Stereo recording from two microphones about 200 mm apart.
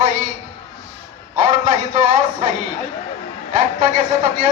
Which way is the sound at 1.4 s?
35° right (ahead or behind).